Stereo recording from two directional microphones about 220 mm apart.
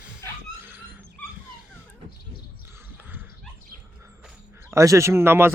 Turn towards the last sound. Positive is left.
turn(degrees=-10)  # may be behind; listen again after turning